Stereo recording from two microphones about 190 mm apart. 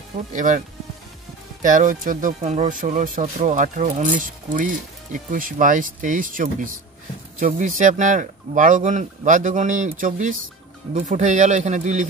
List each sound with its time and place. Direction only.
0.3 s speech: 45° right (ahead or behind)
1.6 s speech: 45° right (ahead or behind)